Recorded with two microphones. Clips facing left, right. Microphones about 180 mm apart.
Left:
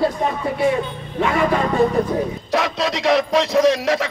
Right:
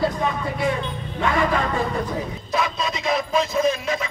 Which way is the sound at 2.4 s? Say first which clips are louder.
Left 1 dB; 75° left (ahead or behind).